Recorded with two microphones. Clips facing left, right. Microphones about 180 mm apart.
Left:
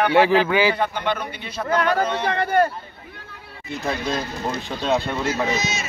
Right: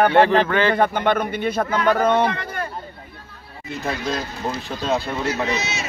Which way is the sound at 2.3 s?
55° left (ahead or behind).